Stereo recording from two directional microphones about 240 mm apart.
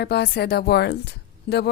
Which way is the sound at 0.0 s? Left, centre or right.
Left.